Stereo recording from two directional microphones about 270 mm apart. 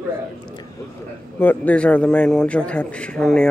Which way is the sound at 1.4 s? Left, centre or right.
Centre.